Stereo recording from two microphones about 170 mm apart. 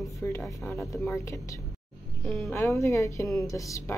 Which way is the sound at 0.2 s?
5° left (ahead or behind).